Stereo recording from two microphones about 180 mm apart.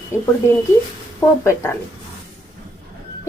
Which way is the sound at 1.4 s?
10° left (ahead or behind).